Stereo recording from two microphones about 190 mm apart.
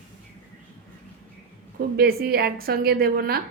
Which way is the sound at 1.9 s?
55° right (ahead or behind).